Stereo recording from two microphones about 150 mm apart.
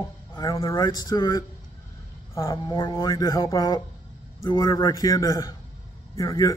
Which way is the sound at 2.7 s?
30° left (ahead or behind).